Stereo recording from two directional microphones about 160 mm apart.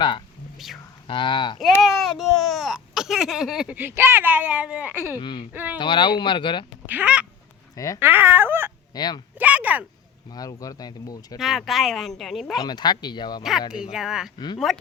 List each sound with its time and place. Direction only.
1.0 s speech: 30° left (ahead or behind)
1.8 s speech: centre (ahead or behind)
5.2 s speech: 30° left (ahead or behind)
6.8 s speech: 10° right (ahead or behind)
9.0 s speech: 25° left (ahead or behind)
9.4 s a sound: 10° right (ahead or behind)
10.3 s speech: 20° left (ahead or behind)
11.3 s speech: centre (ahead or behind)
12.5 s speech: 25° left (ahead or behind)
13.4 s speech: 5° right (ahead or behind)
14.3 s speech: 25° left (ahead or behind)